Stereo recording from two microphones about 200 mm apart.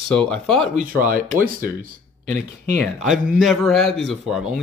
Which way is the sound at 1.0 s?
45° right (ahead or behind).